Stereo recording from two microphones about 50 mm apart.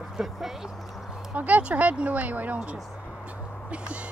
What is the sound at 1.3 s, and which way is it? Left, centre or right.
Speech, right.